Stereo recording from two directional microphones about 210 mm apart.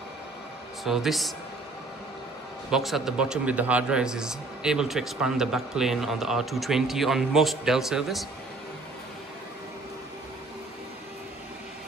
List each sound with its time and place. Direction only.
0.8 s a man's voice: centre (ahead or behind)
2.7 s a man's voice: centre (ahead or behind)